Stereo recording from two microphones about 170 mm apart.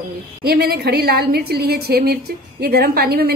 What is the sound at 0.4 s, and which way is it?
A woman's voice, 65° right (ahead or behind).